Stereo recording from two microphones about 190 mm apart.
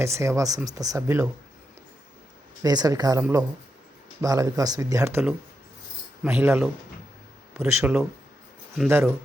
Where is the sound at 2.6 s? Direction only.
20° right (ahead or behind).